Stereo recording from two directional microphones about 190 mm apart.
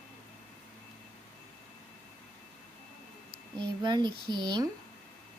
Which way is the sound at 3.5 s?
25° right (ahead or behind).